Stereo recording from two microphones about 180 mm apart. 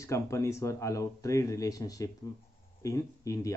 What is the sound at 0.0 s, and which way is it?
Speech, 15° left (ahead or behind).